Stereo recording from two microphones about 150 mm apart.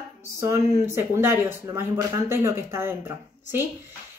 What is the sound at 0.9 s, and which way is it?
Speech, 15° right (ahead or behind).